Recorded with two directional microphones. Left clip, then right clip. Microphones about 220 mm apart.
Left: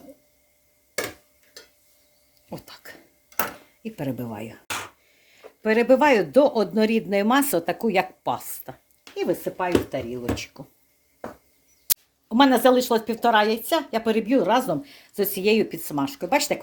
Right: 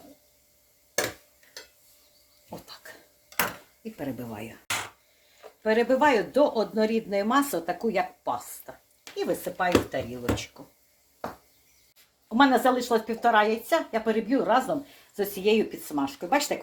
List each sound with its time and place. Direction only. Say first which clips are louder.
2.5 s a sound: left 3 dB; 50° left (ahead or behind)
3.8 s speech: left 4 dB; 45° left (ahead or behind)
5.6 s speech: left 4 dB; 55° left (ahead or behind)
12.4 s speech: left 4 dB; 45° left (ahead or behind)